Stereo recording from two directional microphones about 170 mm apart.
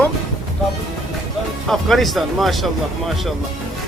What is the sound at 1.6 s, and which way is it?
Speech, centre (ahead or behind).